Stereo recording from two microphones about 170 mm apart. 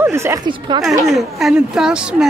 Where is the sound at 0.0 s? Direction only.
15° right (ahead or behind).